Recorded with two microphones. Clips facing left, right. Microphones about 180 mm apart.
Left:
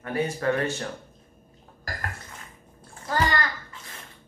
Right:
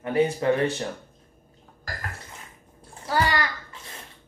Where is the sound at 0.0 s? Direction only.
20° right (ahead or behind).